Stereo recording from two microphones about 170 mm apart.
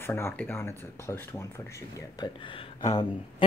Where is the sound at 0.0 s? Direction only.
15° left (ahead or behind).